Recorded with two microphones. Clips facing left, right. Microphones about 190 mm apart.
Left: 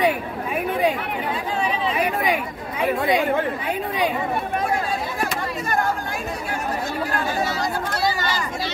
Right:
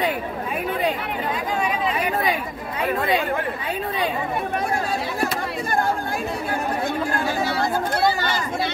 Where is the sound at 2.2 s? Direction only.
10° left (ahead or behind).